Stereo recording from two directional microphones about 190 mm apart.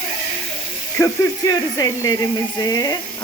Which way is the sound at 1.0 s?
15° left (ahead or behind).